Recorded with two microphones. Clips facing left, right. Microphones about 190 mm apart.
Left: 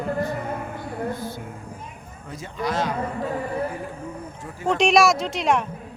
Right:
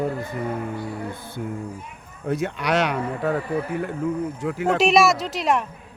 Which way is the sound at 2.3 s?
70° right (ahead or behind).